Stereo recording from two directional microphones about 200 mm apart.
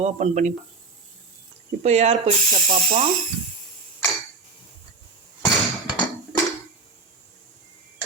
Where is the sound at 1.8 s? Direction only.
35° right (ahead or behind).